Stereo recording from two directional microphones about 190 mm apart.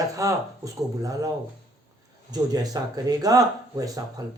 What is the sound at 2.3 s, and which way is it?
Speech, 20° right (ahead or behind).